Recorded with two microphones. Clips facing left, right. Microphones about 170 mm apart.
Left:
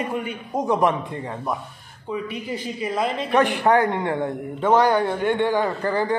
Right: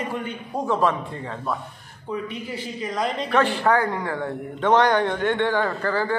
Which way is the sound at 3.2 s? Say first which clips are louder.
Left 2 dB; 15° left (ahead or behind).